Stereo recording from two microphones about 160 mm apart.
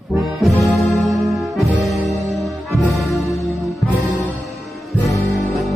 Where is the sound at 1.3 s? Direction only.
Centre (ahead or behind).